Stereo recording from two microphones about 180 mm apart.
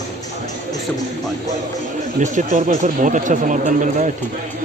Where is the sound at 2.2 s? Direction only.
40° right (ahead or behind).